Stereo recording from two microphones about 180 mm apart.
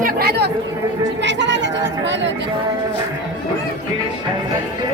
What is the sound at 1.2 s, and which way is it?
Speech, 80° right.